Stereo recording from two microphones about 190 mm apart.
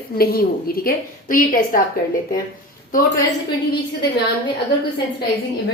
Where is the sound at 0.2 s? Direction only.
50° left (ahead or behind).